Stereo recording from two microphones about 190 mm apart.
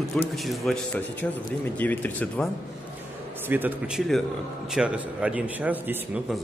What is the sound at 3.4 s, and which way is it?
A man's voice, 10° right (ahead or behind).